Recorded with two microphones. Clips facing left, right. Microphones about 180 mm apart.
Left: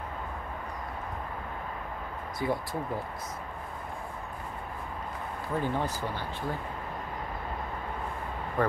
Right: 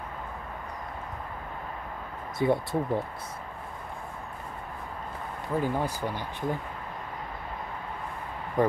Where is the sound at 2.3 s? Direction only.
25° right (ahead or behind).